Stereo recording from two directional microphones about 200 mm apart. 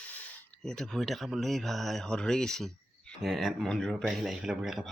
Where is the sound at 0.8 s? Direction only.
Centre (ahead or behind).